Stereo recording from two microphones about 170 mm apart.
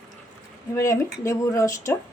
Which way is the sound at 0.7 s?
20° left (ahead or behind).